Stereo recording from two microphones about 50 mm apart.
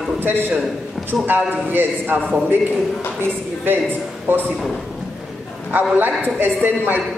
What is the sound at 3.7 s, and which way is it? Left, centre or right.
Speech, right.